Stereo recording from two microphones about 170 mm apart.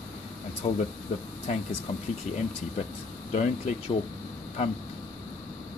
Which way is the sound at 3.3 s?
45° left (ahead or behind).